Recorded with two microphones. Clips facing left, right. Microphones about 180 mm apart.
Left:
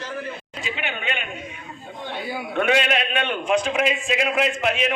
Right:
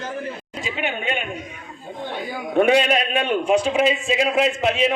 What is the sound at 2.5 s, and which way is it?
A man's voice, 35° right (ahead or behind).